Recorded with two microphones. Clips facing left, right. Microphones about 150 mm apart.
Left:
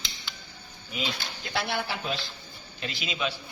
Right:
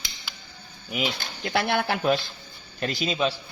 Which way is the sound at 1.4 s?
65° right (ahead or behind).